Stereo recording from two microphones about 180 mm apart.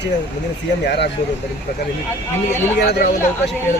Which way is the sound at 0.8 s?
65° left (ahead or behind).